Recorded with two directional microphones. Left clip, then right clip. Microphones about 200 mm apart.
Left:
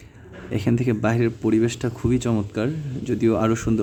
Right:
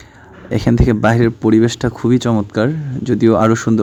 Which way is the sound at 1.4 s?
25° right (ahead or behind).